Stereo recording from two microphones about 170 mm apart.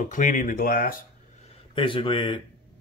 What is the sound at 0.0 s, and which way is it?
Speech, 50° left (ahead or behind).